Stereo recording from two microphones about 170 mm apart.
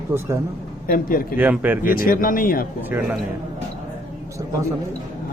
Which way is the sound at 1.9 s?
60° left (ahead or behind).